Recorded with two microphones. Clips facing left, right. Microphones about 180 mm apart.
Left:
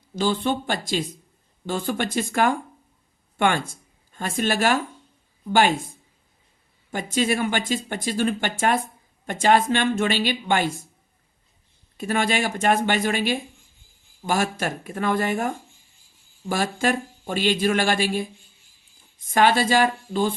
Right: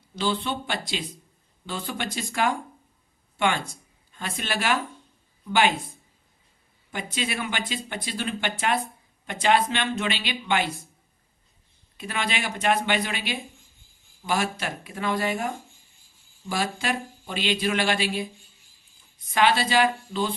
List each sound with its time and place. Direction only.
0.2 s speech: 45° left (ahead or behind)
6.9 s speech: 45° left (ahead or behind)
11.9 s speech: 45° left (ahead or behind)
19.3 s speech: 45° left (ahead or behind)